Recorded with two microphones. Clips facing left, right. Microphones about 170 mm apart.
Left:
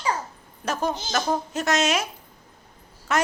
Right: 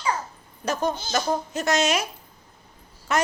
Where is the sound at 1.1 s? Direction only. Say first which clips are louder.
Even; centre (ahead or behind).